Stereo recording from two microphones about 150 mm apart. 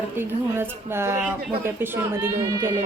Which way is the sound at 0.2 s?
15° right (ahead or behind).